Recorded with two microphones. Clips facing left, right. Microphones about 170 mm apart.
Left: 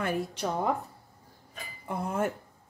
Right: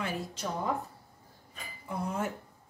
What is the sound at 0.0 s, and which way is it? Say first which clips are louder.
Speech: left 5 dB; 60° left (ahead or behind).